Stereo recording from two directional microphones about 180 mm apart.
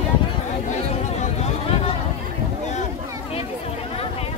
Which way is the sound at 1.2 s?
35° left (ahead or behind).